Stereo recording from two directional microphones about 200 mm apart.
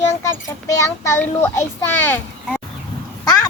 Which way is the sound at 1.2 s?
10° left (ahead or behind).